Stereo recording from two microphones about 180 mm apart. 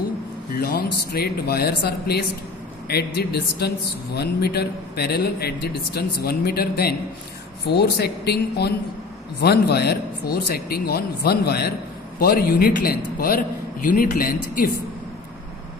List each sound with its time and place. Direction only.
0.6 s a man's voice: 60° left (ahead or behind)